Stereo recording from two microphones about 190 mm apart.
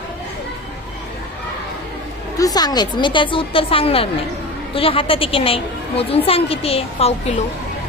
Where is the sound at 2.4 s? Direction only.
20° left (ahead or behind).